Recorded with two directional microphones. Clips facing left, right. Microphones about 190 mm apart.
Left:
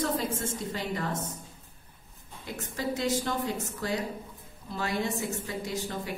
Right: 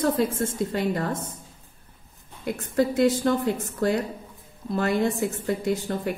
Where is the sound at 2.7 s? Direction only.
55° right (ahead or behind).